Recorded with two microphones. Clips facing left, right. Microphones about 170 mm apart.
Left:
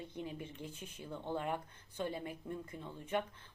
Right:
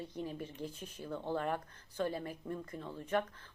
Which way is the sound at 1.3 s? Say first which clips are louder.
Right 2 dB; 15° left (ahead or behind).